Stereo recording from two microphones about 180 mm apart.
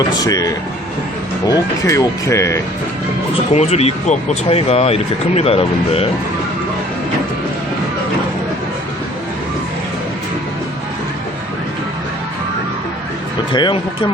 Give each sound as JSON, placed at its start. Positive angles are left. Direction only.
{"t": 0.0, "sound": "speech", "side_deg": 20}
{"t": 3.5, "sound": "speech", "side_deg": 35}
{"t": 13.5, "sound": "speech", "side_deg": 25}